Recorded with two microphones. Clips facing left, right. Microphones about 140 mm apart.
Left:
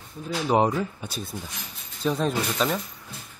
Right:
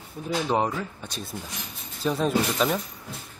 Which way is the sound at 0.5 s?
20° left (ahead or behind).